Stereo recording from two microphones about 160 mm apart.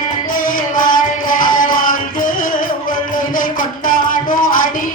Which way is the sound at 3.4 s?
60° left (ahead or behind).